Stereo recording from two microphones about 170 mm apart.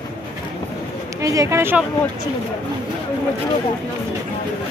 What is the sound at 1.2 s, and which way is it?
Speech, 20° right (ahead or behind).